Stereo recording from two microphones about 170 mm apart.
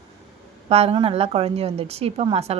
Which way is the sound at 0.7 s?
35° right (ahead or behind).